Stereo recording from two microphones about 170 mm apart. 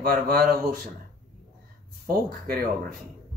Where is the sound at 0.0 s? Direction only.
65° right (ahead or behind).